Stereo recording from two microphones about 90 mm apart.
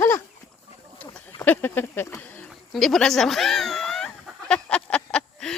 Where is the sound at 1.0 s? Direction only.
20° left (ahead or behind).